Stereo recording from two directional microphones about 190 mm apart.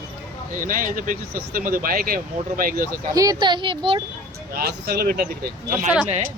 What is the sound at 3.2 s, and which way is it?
Speech, 20° right (ahead or behind).